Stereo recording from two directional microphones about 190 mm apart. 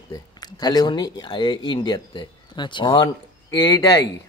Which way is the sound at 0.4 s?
20° left (ahead or behind).